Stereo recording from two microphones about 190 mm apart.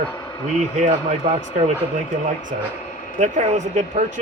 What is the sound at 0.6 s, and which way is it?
Speech, 40° right (ahead or behind).